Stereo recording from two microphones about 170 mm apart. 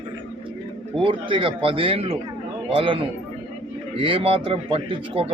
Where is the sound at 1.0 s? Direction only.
30° right (ahead or behind).